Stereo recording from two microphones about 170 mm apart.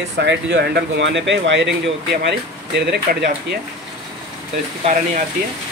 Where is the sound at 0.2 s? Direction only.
90° right.